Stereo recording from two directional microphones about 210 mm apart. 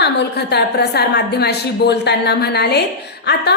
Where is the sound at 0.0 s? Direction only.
50° left (ahead or behind).